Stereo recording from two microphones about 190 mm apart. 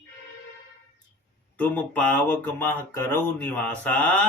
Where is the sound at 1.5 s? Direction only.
5° left (ahead or behind).